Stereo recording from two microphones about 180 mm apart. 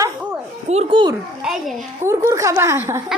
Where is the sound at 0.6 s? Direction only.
35° right (ahead or behind).